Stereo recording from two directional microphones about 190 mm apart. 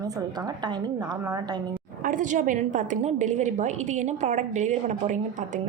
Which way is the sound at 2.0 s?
40° right (ahead or behind).